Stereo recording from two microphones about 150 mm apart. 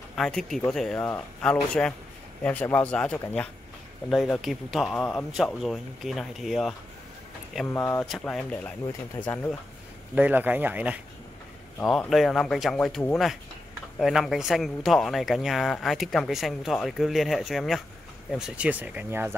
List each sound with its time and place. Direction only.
0.1 s speech: centre (ahead or behind)
4.1 s speech: centre (ahead or behind)
7.7 s speech: 15° left (ahead or behind)
8.2 s speech: 5° left (ahead or behind)
9.1 s speech: 20° left (ahead or behind)
10.1 s speech: 10° right (ahead or behind)
11.8 s speech: centre (ahead or behind); by 19.3 s 15° right (ahead or behind)